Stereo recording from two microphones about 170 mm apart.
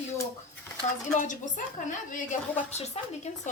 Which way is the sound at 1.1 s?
45° left (ahead or behind).